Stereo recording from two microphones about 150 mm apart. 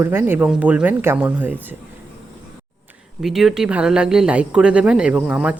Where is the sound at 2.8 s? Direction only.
Centre (ahead or behind).